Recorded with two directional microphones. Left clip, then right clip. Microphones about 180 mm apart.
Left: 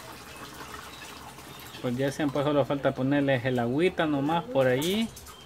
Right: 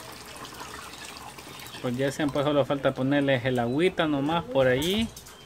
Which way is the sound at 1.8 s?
Centre (ahead or behind).